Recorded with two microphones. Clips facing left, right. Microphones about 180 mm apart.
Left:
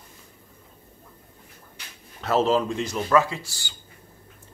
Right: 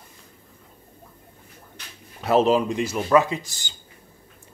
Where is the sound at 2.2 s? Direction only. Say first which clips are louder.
Right 3 dB; 15° right (ahead or behind).